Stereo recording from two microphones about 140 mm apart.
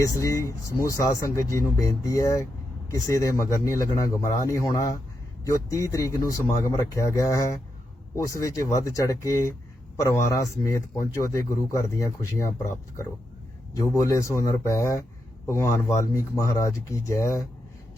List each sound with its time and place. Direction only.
0.0 s speech: 20° left (ahead or behind)